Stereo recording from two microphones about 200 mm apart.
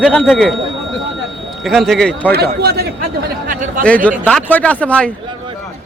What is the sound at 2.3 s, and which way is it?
Speech, 50° right (ahead or behind).